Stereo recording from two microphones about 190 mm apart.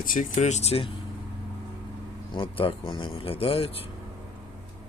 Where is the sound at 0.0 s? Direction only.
45° left (ahead or behind).